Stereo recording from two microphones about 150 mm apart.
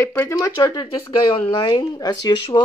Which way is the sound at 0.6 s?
30° left (ahead or behind).